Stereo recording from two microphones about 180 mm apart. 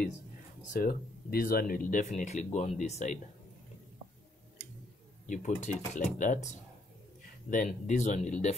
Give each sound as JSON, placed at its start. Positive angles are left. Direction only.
{"t": 0.7, "sound": "speech", "side_deg": 55}
{"t": 5.3, "sound": "speech", "side_deg": 40}